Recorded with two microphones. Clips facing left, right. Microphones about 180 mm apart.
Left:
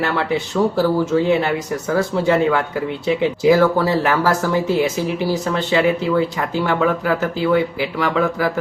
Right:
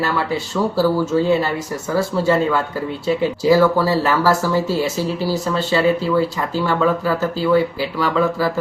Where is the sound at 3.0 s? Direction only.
20° left (ahead or behind).